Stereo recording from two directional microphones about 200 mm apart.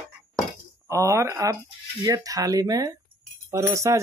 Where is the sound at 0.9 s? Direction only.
15° right (ahead or behind).